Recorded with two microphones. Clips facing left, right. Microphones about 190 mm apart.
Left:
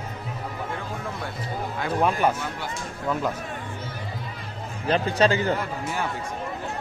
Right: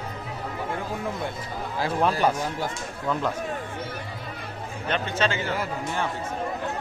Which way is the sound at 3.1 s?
5° left (ahead or behind).